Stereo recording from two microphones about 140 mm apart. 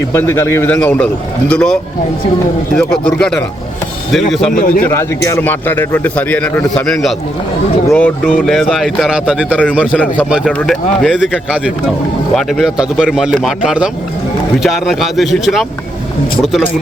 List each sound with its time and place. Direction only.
0.1 s a man's voice: 15° left (ahead or behind); by 4.4 s centre (ahead or behind)
4.5 s a man's voice: 80° left
4.8 s a man's voice: 20° left (ahead or behind); by 10.0 s 5° right (ahead or behind)
10.4 s a man's voice: 5° left (ahead or behind)